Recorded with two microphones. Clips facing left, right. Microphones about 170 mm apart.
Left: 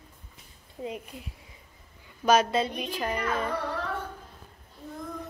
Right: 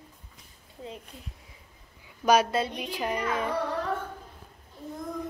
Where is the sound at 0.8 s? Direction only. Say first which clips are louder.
Left 5 dB; 15° left (ahead or behind).